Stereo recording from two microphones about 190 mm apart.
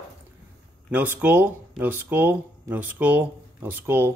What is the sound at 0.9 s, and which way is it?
Speech, 10° right (ahead or behind).